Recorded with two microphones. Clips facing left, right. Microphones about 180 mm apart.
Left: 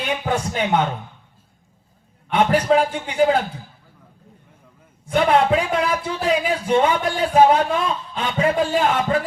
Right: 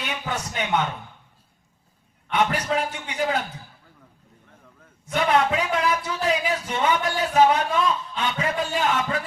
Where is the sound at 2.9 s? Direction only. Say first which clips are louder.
Left 8 dB; 30° left (ahead or behind).